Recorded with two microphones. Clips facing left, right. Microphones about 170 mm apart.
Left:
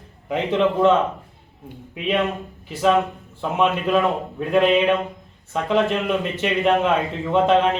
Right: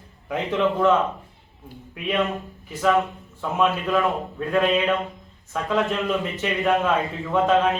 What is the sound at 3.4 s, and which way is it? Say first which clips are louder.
A man's voice: left 2 dB; 20° left (ahead or behind).